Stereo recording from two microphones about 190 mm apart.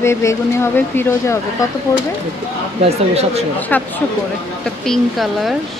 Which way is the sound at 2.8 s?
35° right (ahead or behind).